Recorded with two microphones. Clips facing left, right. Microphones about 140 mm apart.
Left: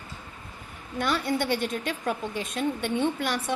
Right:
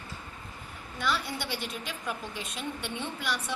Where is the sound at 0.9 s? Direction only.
50° left (ahead or behind).